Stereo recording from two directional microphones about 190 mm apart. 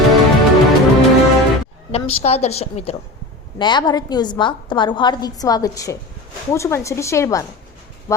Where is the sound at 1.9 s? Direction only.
35° left (ahead or behind).